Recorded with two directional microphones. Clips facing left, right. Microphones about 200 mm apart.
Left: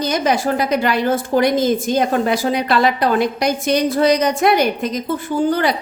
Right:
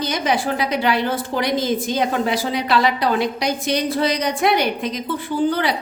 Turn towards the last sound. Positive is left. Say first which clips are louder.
# left 3 dB
turn(degrees=45)  # may be behind; listen again after turning